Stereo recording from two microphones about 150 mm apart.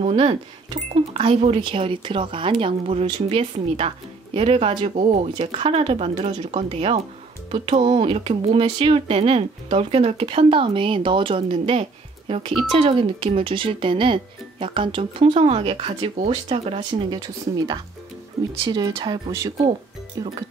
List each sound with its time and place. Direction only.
0.0 s speech: 40° right (ahead or behind)
18.6 s speech: 30° right (ahead or behind)
19.3 s speech: 20° right (ahead or behind)